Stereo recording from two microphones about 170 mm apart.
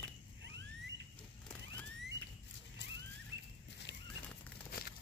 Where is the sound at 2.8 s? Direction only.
90° left.